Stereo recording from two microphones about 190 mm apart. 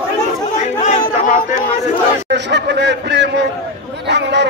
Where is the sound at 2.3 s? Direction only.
65° right (ahead or behind).